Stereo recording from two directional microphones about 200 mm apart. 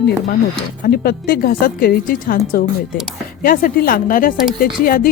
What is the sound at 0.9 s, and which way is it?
Speech, 50° left (ahead or behind).